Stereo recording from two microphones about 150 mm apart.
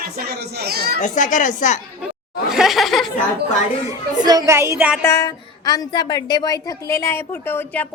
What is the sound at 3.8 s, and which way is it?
A woman's voice, 25° right (ahead or behind).